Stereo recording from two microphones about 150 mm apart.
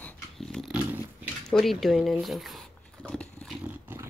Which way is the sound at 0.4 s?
Centre (ahead or behind).